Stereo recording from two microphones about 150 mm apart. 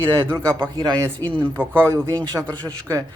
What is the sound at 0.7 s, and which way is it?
Speech, 25° right (ahead or behind).